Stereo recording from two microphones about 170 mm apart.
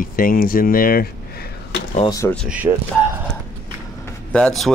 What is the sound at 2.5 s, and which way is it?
Speech, 10° right (ahead or behind).